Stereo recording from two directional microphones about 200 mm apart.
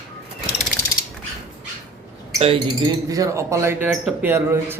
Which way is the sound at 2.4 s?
25° right (ahead or behind).